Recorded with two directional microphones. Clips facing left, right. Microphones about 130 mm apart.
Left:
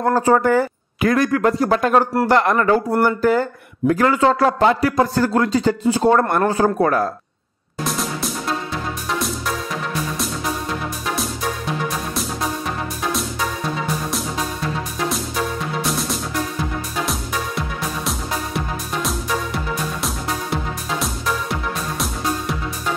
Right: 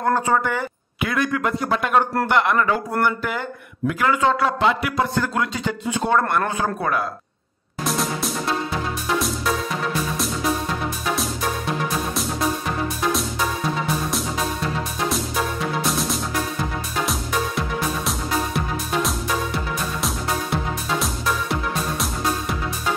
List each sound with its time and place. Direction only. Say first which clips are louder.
0.0 s speech: left 4 dB; 35° left (ahead or behind)
7.8 s music: even; centre (ahead or behind)
15.0 s music: even; centre (ahead or behind)